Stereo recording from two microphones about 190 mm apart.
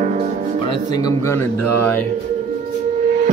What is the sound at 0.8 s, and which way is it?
Speech, 20° left (ahead or behind).